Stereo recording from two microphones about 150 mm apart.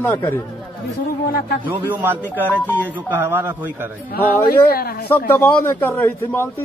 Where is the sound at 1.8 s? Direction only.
10° right (ahead or behind).